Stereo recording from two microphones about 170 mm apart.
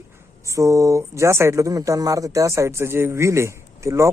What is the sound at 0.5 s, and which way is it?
A man's voice, 20° right (ahead or behind).